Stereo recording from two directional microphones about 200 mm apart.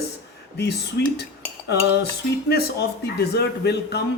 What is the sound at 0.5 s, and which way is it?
Cutlery, 55° left (ahead or behind).